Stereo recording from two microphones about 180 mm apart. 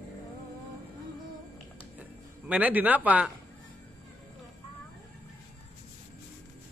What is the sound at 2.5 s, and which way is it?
Speech, 10° right (ahead or behind).